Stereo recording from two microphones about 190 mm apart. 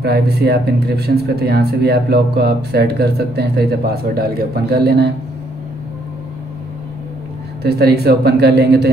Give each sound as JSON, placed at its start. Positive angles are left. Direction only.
{"t": 0.0, "sound": "speech", "side_deg": -60}
{"t": 7.6, "sound": "speech", "side_deg": -55}